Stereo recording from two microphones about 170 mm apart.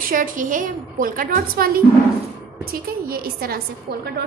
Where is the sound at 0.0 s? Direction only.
50° right (ahead or behind).